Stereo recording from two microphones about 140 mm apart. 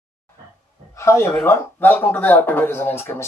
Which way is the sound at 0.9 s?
20° left (ahead or behind).